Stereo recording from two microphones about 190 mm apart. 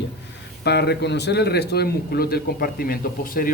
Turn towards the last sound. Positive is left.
turn(degrees=50)  # may be behind; listen again after turning